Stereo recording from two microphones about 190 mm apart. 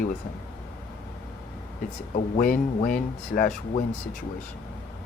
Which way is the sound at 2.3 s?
40° left (ahead or behind).